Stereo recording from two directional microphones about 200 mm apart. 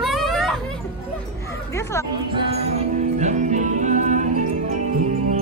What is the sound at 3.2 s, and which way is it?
Music, 35° right (ahead or behind).